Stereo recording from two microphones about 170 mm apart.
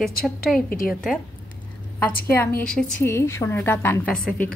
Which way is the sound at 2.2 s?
10° left (ahead or behind).